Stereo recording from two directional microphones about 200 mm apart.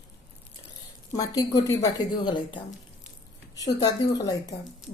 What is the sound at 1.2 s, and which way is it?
A woman's voice, 20° left (ahead or behind).